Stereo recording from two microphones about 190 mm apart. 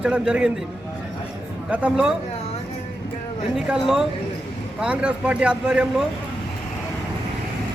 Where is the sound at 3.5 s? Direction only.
5° right (ahead or behind).